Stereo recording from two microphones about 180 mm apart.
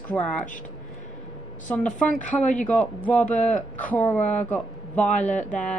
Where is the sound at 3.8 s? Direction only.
10° left (ahead or behind).